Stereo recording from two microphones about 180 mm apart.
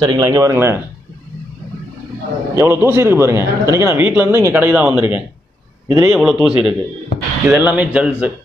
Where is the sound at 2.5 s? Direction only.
15° right (ahead or behind).